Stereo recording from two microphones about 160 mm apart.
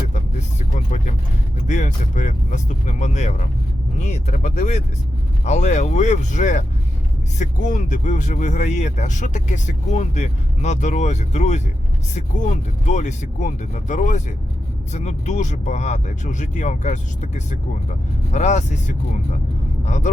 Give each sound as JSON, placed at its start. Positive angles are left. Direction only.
{"t": 0.1, "sound": "vehicle", "side_deg": 50}
{"t": 1.6, "sound": "speech", "side_deg": 50}